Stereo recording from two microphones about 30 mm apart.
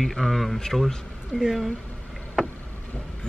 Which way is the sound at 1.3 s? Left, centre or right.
Left.